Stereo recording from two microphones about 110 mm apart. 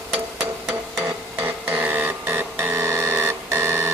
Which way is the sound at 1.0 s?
20° right (ahead or behind).